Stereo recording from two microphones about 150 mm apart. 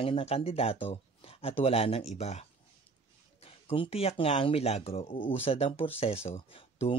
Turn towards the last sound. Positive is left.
turn(degrees=40)  # may be behind; listen again after turning